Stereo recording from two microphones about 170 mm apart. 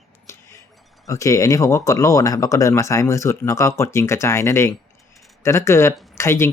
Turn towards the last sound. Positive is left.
turn(degrees=15)  # may be behind; listen again after turning